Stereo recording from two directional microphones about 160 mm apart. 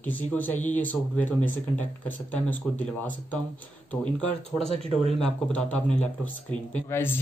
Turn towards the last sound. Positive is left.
turn(degrees=15)  # may be behind; listen again after turning